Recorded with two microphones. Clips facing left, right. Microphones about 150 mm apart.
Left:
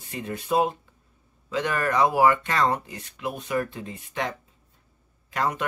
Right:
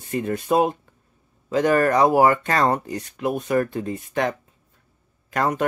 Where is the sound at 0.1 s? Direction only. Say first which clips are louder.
Right 5 dB; 50° right (ahead or behind).